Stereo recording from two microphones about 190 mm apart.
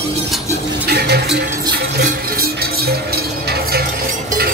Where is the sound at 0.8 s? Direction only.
60° right (ahead or behind).